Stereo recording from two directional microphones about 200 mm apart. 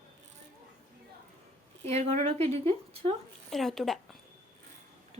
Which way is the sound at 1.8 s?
35° right (ahead or behind).